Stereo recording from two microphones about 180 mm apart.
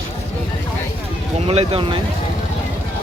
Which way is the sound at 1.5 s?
30° right (ahead or behind).